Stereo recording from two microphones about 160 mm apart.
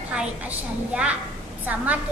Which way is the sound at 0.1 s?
5° right (ahead or behind).